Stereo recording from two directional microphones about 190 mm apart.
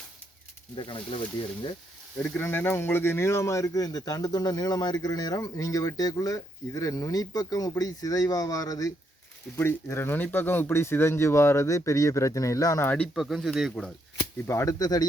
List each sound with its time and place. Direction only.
0.8 s speech: 25° left (ahead or behind)
2.1 s speech: 10° left (ahead or behind)
14.4 s speech: 15° left (ahead or behind)